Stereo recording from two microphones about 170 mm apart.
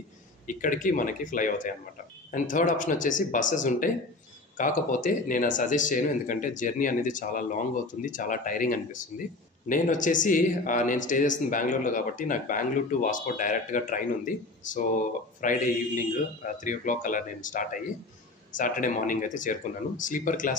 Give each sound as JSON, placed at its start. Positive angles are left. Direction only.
{"t": 0.5, "sound": "speech", "side_deg": 50}